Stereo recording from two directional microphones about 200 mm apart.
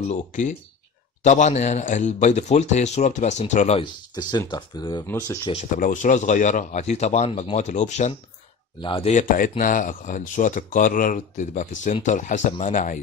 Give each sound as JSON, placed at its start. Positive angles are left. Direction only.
{"t": 0.1, "sound": "speech", "side_deg": 35}
{"t": 4.1, "sound": "speech", "side_deg": 20}
{"t": 5.8, "sound": "speech", "side_deg": 40}